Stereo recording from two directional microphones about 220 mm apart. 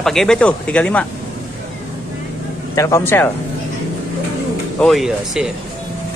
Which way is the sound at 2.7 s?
15° left (ahead or behind).